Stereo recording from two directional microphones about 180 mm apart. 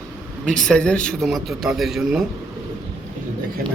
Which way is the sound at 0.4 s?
5° left (ahead or behind).